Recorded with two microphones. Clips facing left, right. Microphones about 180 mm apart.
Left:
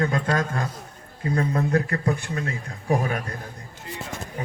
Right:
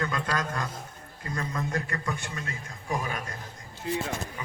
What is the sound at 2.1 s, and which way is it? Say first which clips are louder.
A man's voice: left 8 dB; 60° left (ahead or behind).